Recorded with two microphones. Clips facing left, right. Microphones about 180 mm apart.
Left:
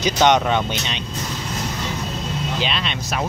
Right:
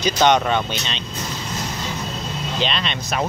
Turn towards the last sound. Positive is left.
turn(degrees=5)  # may be behind; listen again after turning